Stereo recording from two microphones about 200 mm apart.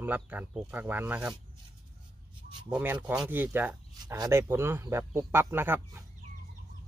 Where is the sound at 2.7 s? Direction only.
10° right (ahead or behind).